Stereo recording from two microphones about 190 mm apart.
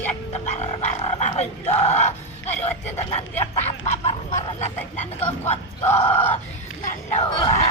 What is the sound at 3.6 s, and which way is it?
Duck, 35° left (ahead or behind).